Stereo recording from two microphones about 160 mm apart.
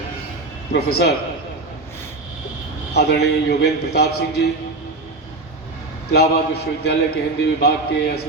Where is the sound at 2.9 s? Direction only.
90° left.